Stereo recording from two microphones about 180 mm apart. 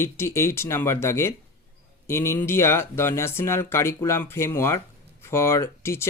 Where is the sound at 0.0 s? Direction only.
15° left (ahead or behind).